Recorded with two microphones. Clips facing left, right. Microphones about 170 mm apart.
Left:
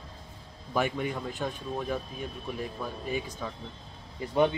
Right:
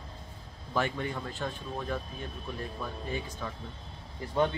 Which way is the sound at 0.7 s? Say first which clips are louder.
Left 2 dB; 15° left (ahead or behind).